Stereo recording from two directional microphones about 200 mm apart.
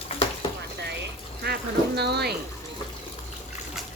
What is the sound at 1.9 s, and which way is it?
Speech, 55° right (ahead or behind).